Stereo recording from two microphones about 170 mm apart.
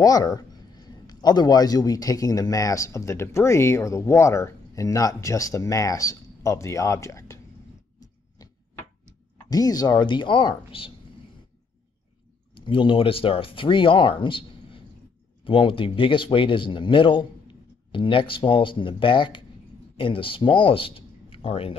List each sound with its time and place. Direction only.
0.0 s a man's voice: 20° left (ahead or behind)
9.5 s a man's voice: 20° left (ahead or behind)
12.5 s a man's voice: 30° left (ahead or behind)